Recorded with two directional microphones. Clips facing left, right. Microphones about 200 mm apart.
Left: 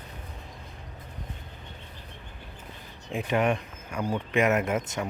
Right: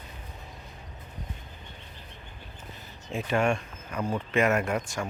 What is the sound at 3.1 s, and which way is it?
Speech, 15° left (ahead or behind).